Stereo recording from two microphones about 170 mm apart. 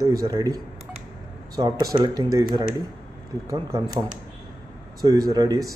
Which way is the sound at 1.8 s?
20° right (ahead or behind).